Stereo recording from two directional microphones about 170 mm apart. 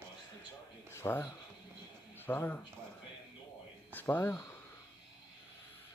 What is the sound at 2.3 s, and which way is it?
Speech, 10° left (ahead or behind).